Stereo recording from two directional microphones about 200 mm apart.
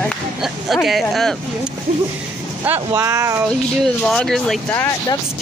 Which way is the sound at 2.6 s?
10° right (ahead or behind).